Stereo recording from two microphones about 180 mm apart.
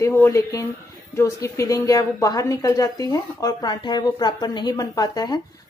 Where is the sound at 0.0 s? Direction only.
15° left (ahead or behind).